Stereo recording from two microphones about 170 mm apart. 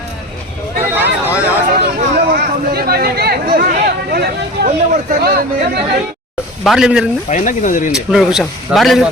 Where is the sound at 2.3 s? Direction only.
65° right (ahead or behind).